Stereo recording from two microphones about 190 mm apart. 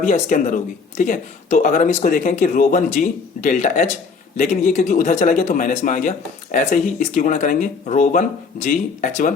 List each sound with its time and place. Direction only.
0.0 s a man's voice: 45° left (ahead or behind)